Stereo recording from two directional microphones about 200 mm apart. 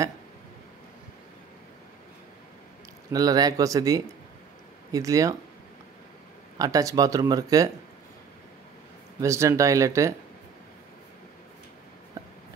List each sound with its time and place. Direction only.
3.1 s speech: 20° right (ahead or behind)
6.6 s speech: 15° right (ahead or behind)
9.2 s speech: 15° right (ahead or behind)